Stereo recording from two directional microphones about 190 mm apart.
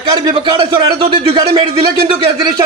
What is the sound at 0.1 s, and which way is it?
A man's voice, 25° right (ahead or behind).